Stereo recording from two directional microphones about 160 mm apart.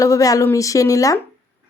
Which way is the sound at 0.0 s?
20° left (ahead or behind).